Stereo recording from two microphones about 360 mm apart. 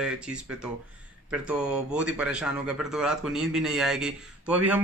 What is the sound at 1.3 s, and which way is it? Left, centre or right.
Speech, centre.